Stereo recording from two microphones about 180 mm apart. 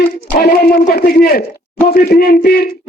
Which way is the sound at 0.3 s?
60° left (ahead or behind).